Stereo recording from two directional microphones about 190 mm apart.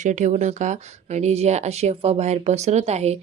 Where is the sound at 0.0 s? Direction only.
40° right (ahead or behind).